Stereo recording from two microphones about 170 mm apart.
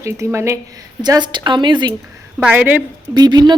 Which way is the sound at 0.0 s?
15° right (ahead or behind).